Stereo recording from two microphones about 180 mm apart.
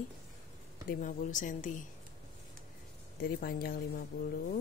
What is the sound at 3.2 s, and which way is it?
Speech, 55° left (ahead or behind).